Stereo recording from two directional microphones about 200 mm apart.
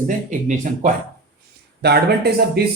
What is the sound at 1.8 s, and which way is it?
Speech, 55° right (ahead or behind).